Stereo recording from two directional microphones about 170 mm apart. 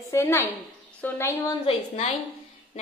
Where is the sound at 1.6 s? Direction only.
40° left (ahead or behind).